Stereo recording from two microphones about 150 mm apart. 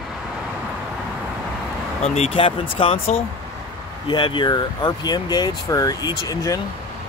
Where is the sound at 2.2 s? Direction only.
35° left (ahead or behind).